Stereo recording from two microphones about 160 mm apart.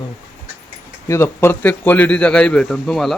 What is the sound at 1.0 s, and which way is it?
A man's voice, 15° left (ahead or behind).